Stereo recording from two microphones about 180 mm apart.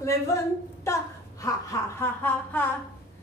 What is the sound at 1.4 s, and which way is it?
A woman's voice, 15° left (ahead or behind).